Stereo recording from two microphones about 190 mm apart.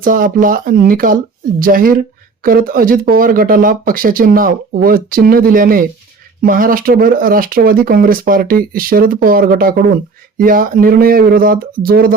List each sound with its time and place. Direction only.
0.0 s speech: 45° right (ahead or behind)